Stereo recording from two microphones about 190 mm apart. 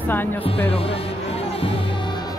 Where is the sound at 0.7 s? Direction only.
30° left (ahead or behind).